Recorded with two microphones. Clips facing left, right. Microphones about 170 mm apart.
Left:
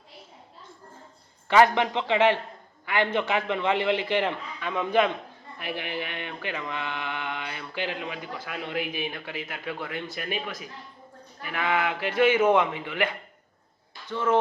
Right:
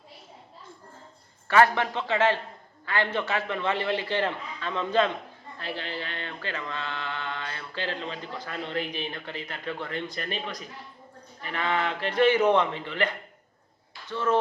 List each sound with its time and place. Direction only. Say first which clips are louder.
1.5 s mantra: left 2 dB; 20° left (ahead or behind)